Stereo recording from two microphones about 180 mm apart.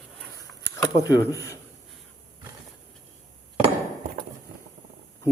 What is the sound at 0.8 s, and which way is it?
Speech, 20° left (ahead or behind).